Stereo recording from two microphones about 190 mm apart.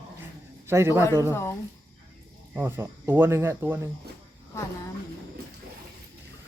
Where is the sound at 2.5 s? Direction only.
10° right (ahead or behind).